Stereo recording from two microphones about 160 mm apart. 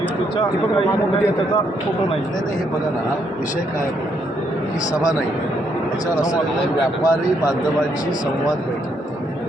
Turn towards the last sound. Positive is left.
turn(degrees=25)  # may be behind; listen again after turning